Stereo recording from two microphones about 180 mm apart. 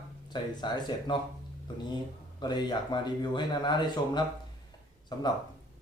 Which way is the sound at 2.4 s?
25° left (ahead or behind).